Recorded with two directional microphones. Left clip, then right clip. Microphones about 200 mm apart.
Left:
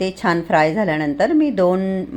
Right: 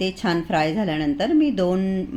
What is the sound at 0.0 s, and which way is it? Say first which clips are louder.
A woman's voice: left 4 dB; 5° left (ahead or behind).